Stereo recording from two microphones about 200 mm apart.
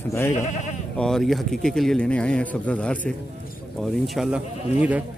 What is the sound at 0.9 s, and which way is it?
Speech, centre (ahead or behind).